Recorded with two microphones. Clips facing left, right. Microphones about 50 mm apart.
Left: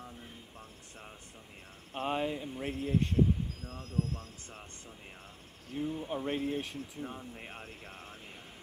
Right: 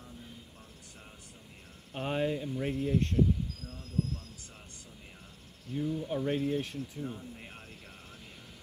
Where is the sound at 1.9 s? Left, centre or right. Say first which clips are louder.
Right 1 dB; centre.